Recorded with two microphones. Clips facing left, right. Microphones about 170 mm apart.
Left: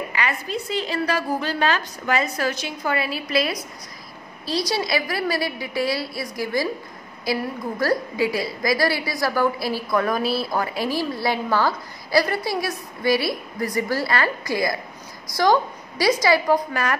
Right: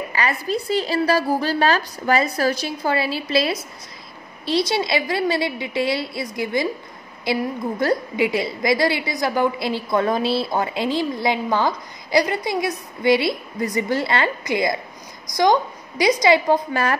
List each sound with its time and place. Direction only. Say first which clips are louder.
0.1 s a woman's voice: right 3 dB; 35° right (ahead or behind)